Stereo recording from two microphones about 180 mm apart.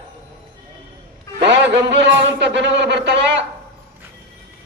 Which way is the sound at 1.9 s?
75° right (ahead or behind).